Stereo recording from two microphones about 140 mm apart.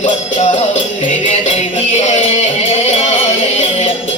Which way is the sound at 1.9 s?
50° left (ahead or behind).